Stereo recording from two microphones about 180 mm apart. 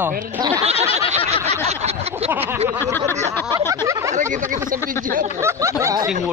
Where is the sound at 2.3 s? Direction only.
10° right (ahead or behind).